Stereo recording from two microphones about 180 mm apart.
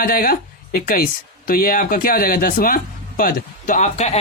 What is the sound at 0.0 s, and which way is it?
A man's voice, 50° left (ahead or behind).